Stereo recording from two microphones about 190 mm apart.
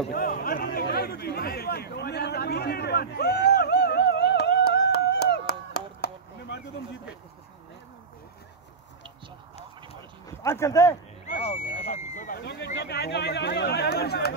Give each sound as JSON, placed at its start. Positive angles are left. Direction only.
{"t": 0.1, "sound": "chatter", "side_deg": 50}
{"t": 10.2, "sound": "speech", "side_deg": 15}
{"t": 11.2, "sound": "a sound", "side_deg": 35}
{"t": 12.4, "sound": "speech", "side_deg": 60}